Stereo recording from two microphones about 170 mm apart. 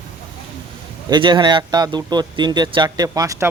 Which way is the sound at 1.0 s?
25° right (ahead or behind).